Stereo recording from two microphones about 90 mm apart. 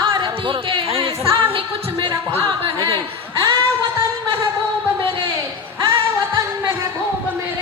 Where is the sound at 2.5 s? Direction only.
65° right (ahead or behind).